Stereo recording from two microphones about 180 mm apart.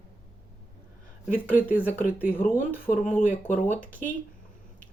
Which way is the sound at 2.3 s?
10° left (ahead or behind).